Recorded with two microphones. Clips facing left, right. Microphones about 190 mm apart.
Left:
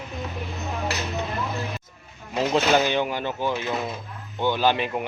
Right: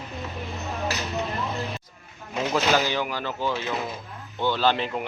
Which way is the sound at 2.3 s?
25° left (ahead or behind).